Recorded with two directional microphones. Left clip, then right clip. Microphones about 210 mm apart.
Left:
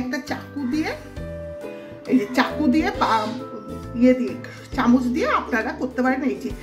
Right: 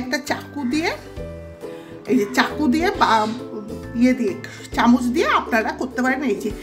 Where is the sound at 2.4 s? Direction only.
40° right (ahead or behind).